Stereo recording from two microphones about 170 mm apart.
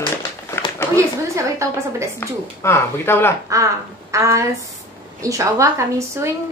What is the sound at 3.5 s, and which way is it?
A woman's voice, 20° right (ahead or behind).